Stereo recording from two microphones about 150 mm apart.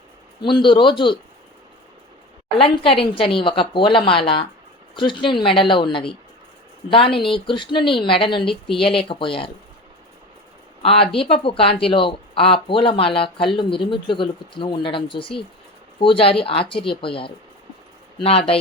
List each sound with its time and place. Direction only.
0.4 s speech: 30° left (ahead or behind)
2.6 s speech: 35° left (ahead or behind)
8.4 s speech: centre (ahead or behind)
8.8 s speech: 35° left (ahead or behind)
10.8 s speech: 40° left (ahead or behind)